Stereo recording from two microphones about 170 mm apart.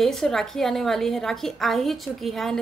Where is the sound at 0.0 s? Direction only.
5° left (ahead or behind).